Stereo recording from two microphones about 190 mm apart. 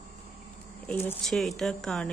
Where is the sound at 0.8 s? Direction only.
10° left (ahead or behind).